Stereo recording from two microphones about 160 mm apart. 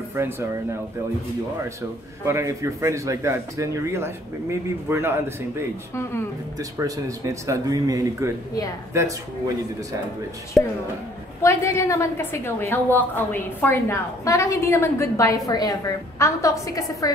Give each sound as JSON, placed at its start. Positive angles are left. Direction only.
{"t": 0.2, "sound": "speech", "side_deg": -15}
{"t": 1.8, "sound": "speech", "side_deg": -20}
{"t": 10.6, "sound": "a woman's voice", "side_deg": 0}
{"t": 11.4, "sound": "a woman's voice", "side_deg": 15}